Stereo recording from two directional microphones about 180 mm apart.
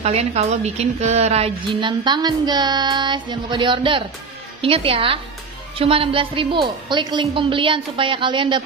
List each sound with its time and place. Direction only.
0.0 s a woman's voice: 35° right (ahead or behind)